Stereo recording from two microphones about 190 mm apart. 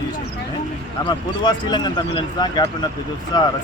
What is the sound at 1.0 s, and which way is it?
Speech, 20° left (ahead or behind).